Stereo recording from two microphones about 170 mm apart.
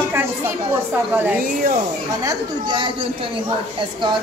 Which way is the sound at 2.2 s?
30° right (ahead or behind).